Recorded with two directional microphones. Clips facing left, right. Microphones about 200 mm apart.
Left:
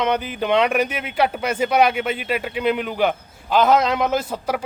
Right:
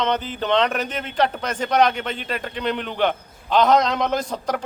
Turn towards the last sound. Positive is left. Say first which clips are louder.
# left 2 dB
turn(degrees=5)  # may be behind; listen again after turning